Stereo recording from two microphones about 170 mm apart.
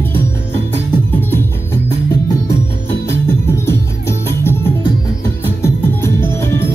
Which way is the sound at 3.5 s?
15° left (ahead or behind).